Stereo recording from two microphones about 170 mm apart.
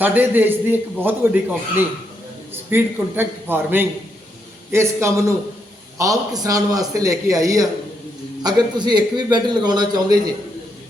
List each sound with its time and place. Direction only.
0.0 s a man's voice: 10° right (ahead or behind)